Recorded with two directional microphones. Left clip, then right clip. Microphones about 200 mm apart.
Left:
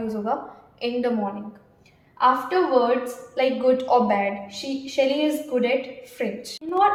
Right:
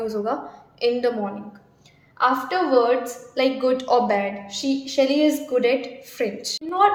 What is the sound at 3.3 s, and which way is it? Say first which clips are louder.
A woman's voice: even; 45° right (ahead or behind).